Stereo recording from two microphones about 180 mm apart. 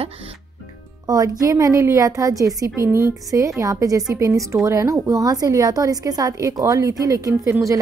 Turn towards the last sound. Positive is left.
turn(degrees=-15)  # may be behind; listen again after turning